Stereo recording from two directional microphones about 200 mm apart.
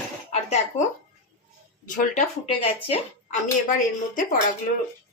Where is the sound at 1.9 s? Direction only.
40° left (ahead or behind).